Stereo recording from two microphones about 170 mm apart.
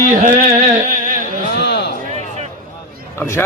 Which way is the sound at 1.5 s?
80° left.